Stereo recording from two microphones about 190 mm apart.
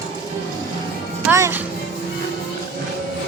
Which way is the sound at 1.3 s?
15° right (ahead or behind).